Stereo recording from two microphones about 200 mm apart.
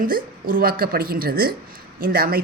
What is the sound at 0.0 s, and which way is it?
A woman's voice, 45° right (ahead or behind).